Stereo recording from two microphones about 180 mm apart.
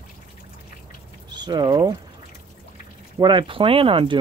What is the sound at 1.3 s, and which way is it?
Speech, 25° right (ahead or behind).